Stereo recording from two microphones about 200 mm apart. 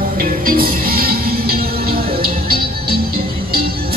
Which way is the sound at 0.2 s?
45° right (ahead or behind).